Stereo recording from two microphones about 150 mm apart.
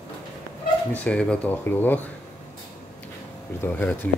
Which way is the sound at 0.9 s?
10° left (ahead or behind).